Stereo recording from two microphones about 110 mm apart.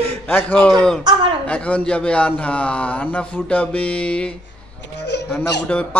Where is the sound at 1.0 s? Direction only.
45° right (ahead or behind).